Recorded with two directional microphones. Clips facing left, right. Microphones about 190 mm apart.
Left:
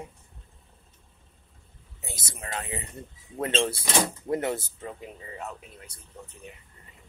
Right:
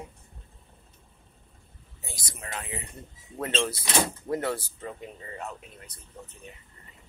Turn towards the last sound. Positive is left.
turn(degrees=0)  # may be behind; listen again after turning